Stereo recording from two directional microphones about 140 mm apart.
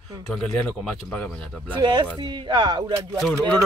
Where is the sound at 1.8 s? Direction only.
30° right (ahead or behind).